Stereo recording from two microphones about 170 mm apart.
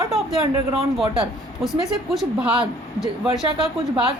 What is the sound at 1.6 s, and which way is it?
A woman's voice, centre (ahead or behind).